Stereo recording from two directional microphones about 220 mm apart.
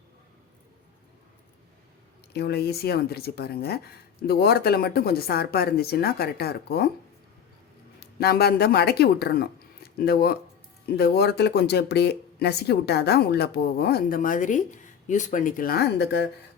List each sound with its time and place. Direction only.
2.3 s speech: 45° left (ahead or behind)
8.2 s speech: 45° left (ahead or behind)